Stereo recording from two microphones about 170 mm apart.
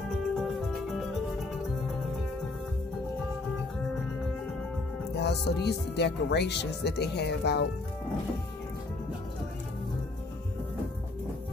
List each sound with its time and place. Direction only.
5.1 s speech: 75° left (ahead or behind)